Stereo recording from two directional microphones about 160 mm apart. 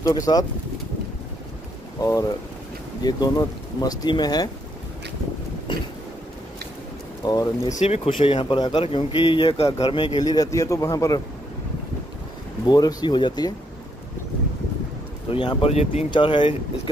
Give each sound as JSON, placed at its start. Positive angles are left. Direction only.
{"t": 0.0, "sound": "speech", "side_deg": 25}
{"t": 2.0, "sound": "speech", "side_deg": 20}
{"t": 5.7, "sound": "speech", "side_deg": 30}
{"t": 7.2, "sound": "speech", "side_deg": 25}
{"t": 7.7, "sound": "speech", "side_deg": 40}
{"t": 12.6, "sound": "speech", "side_deg": 25}
{"t": 15.2, "sound": "speech", "side_deg": 35}
{"t": 16.1, "sound": "speech", "side_deg": 30}